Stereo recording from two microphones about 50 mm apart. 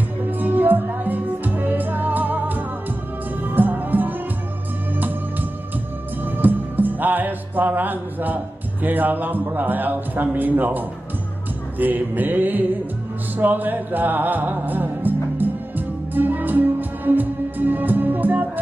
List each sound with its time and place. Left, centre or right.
0.3 s music: right
8.8 s a man's voice: right
11.8 s a man's voice: right
13.4 s music: right